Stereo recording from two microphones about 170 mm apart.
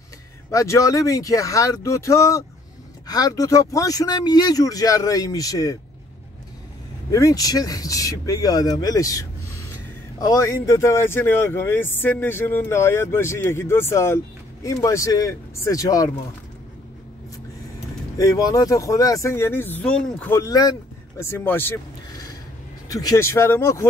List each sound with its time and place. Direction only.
0.5 s speech: 20° left (ahead or behind)
7.1 s speech: 20° left (ahead or behind)
18.1 s speech: 20° left (ahead or behind)
20.3 s speech: 20° left (ahead or behind)
22.8 s speech: 20° left (ahead or behind)